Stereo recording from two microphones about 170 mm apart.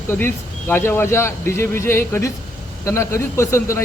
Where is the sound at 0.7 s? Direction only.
10° left (ahead or behind).